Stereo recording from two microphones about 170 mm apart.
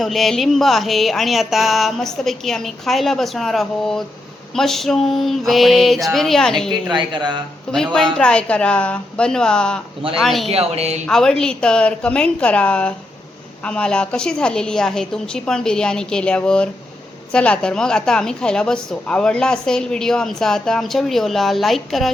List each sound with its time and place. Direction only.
0.0 s a woman's voice: centre (ahead or behind)
6.9 s speech: 25° right (ahead or behind)
7.7 s a woman's voice: 5° left (ahead or behind)
10.5 s speech: 35° right (ahead or behind)
11.0 s a woman's voice: 5° left (ahead or behind)